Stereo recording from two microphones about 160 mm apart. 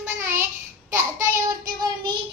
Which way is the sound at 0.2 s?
15° right (ahead or behind).